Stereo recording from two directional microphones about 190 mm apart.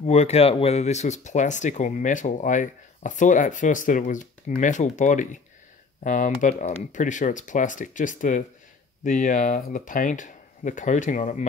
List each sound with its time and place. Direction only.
0.0 s speech: 35° left (ahead or behind)